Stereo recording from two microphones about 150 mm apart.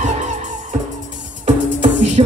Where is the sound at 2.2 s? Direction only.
40° right (ahead or behind).